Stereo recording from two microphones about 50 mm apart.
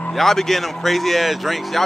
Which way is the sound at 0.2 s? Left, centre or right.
Centre.